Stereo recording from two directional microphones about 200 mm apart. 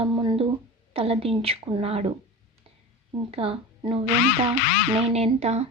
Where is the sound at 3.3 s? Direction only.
30° right (ahead or behind).